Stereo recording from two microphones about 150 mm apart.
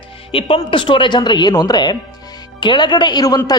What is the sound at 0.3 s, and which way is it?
A man's voice, 35° left (ahead or behind).